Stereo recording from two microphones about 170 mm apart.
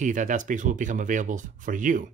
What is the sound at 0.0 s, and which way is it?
Speech, 50° right (ahead or behind).